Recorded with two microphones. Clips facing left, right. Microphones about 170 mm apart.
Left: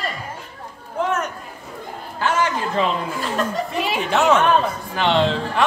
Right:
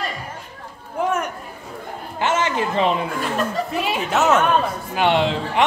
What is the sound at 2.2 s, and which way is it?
Chatter, 20° right (ahead or behind).